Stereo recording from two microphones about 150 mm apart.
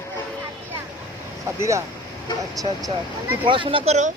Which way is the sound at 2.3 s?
30° left (ahead or behind).